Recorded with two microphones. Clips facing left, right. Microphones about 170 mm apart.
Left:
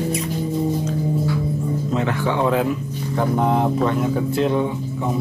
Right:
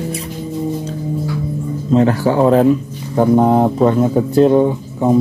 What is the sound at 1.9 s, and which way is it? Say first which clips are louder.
Speech: right 11 dB; 35° right (ahead or behind).